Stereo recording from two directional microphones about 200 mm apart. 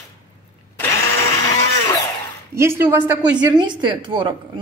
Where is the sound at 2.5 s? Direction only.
15° right (ahead or behind).